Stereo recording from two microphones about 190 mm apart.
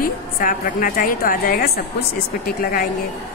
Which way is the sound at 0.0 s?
45° left (ahead or behind).